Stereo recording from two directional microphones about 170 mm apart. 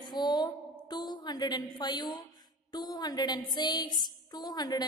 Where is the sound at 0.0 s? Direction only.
25° left (ahead or behind).